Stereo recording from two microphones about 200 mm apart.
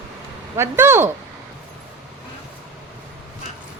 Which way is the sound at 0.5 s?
10° right (ahead or behind).